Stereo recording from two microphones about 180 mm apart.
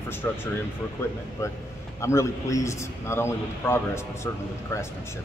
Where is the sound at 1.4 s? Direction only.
15° left (ahead or behind).